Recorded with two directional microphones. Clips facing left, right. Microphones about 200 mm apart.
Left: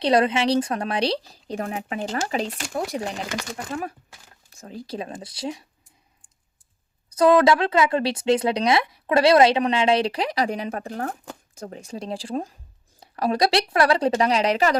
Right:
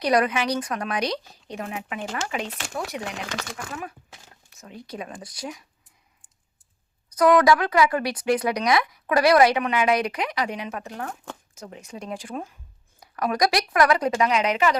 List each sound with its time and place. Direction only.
0.0 s speech: 25° left (ahead or behind)
7.2 s speech: 25° left (ahead or behind)